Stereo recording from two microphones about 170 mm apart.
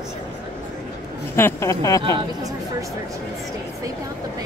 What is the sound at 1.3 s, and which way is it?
Speech, 15° left (ahead or behind).